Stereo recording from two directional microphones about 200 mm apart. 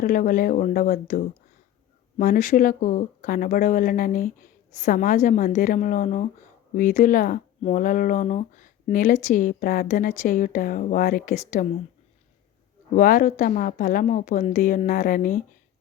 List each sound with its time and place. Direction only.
0.0 s speech: 45° left (ahead or behind)
12.9 s speech: 45° left (ahead or behind)